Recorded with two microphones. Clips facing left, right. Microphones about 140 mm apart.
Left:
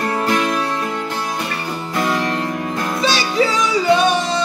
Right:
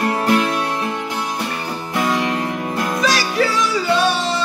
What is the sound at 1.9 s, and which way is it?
Music, 10° right (ahead or behind).